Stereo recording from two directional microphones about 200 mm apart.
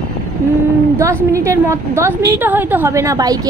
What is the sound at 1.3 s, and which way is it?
A woman's voice, 15° right (ahead or behind).